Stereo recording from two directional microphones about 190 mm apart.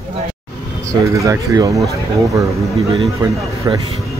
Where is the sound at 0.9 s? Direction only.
15° right (ahead or behind).